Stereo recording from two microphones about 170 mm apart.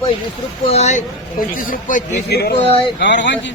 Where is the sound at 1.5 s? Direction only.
55° left (ahead or behind).